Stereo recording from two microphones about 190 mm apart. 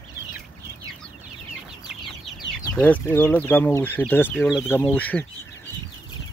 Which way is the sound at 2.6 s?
10° left (ahead or behind).